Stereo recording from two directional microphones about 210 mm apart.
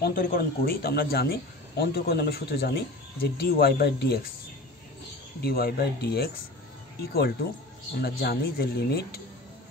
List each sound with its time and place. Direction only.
0.0 s a man's voice: 45° left (ahead or behind)
5.4 s a man's voice: 45° left (ahead or behind)